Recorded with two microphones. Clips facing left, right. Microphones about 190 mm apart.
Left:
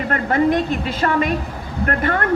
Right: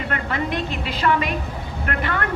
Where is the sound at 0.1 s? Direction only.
45° left (ahead or behind).